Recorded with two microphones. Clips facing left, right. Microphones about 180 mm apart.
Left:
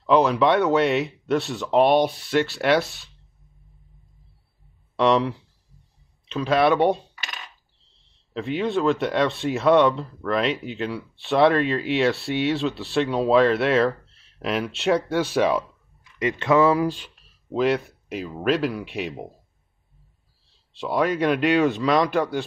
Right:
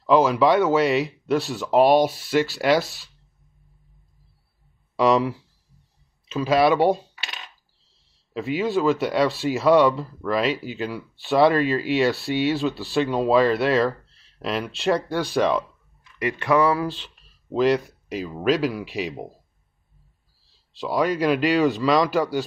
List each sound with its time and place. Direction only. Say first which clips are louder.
0.0 s speech: right 1 dB; centre (ahead or behind)
4.9 s speech: right 1 dB; 5° right (ahead or behind)
16.2 s speech: left 1 dB; 20° left (ahead or behind)
17.0 s speech: even; centre (ahead or behind)
20.7 s speech: even; 5° right (ahead or behind)